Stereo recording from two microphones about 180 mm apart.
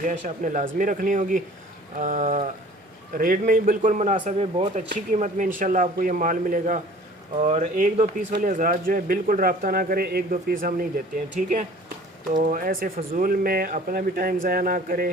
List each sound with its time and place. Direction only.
0.0 s a man's voice: 45° right (ahead or behind)